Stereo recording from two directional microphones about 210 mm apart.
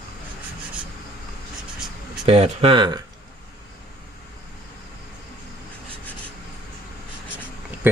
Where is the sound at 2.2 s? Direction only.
25° right (ahead or behind).